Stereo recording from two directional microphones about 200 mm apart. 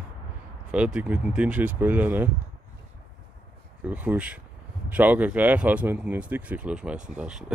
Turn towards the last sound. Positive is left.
turn(degrees=-5)  # may be behind; listen again after turning